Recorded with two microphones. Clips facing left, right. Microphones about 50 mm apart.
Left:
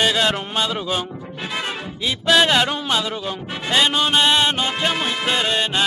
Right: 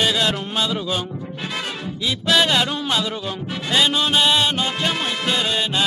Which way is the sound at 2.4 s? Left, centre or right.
Centre.